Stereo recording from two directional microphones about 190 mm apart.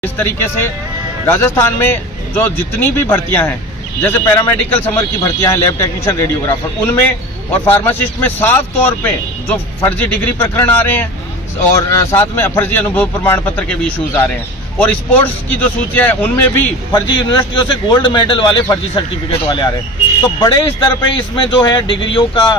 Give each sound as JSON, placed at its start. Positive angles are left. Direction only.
{"t": 0.0, "sound": "speech", "side_deg": 10}
{"t": 16.9, "sound": "a man's voice", "side_deg": 25}